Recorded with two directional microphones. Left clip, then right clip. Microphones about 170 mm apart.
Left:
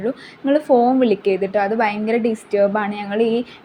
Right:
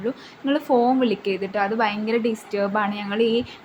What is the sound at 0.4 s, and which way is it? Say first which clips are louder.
A woman's voice: left 5 dB; 15° left (ahead or behind).